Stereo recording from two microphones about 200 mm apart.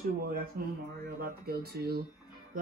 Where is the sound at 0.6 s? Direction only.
50° right (ahead or behind).